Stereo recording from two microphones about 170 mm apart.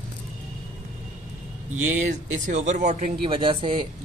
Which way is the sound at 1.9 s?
45° right (ahead or behind).